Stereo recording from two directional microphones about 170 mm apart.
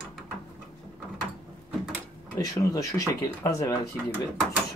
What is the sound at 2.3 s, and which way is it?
Speech, 20° left (ahead or behind).